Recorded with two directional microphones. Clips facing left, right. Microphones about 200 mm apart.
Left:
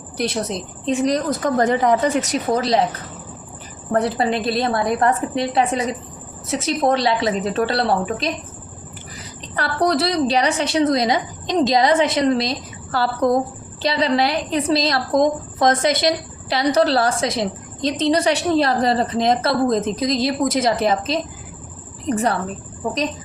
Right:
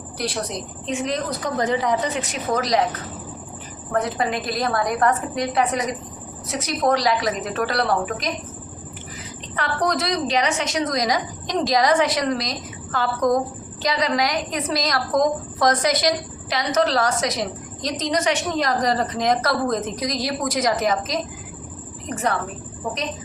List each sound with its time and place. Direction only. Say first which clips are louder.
0.2 s a woman's voice: left 4 dB; 25° left (ahead or behind)
1.0 s a woman's voice: left 6 dB; 45° left (ahead or behind)
3.9 s a woman's voice: left 4 dB; 30° left (ahead or behind)
9.6 s a woman's voice: left 4 dB; 35° left (ahead or behind)